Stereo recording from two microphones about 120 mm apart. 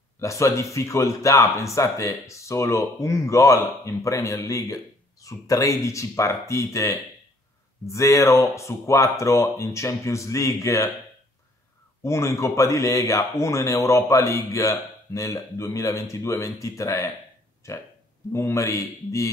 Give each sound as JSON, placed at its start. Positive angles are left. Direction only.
{"t": 0.2, "sound": "speech", "side_deg": 25}
{"t": 12.0, "sound": "speech", "side_deg": 25}